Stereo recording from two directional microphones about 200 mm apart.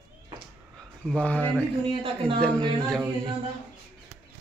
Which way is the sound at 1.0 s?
5° left (ahead or behind).